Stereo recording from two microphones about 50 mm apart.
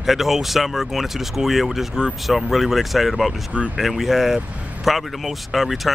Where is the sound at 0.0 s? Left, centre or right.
Centre.